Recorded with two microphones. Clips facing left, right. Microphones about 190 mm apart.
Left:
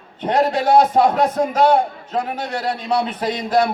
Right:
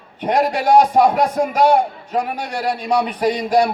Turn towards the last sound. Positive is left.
turn(degrees=-10)  # may be behind; listen again after turning